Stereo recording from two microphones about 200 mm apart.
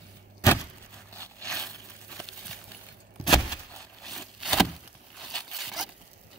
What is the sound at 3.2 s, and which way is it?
Keys jangling, 15° left (ahead or behind).